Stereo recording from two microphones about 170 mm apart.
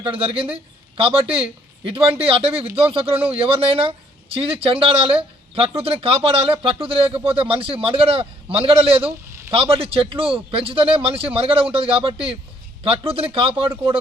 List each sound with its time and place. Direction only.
0.0 s speech: 30° right (ahead or behind)